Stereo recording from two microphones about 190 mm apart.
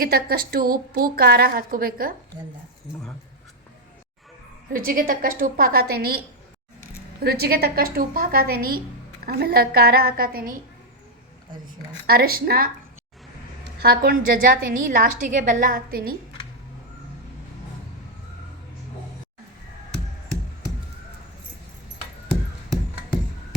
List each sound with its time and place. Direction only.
0.0 s a woman's voice: 50° right (ahead or behind)
4.7 s a woman's voice: 45° right (ahead or behind)
12.0 s a woman's voice: 55° right (ahead or behind)
13.7 s a woman's voice: 55° right (ahead or behind)